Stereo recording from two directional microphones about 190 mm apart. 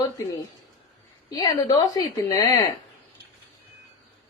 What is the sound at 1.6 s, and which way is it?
Speech, 20° left (ahead or behind).